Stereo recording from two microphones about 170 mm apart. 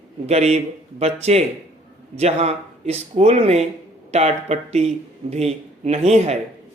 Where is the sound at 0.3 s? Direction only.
40° right (ahead or behind).